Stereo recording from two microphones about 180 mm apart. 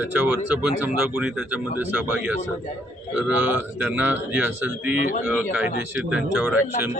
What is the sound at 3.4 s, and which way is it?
A man's voice, 10° right (ahead or behind).